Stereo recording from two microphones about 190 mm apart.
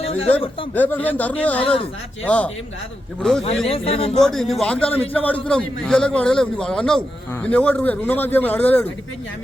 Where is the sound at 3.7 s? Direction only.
30° left (ahead or behind).